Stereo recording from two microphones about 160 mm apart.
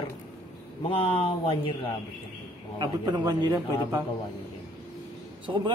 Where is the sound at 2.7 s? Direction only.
30° right (ahead or behind).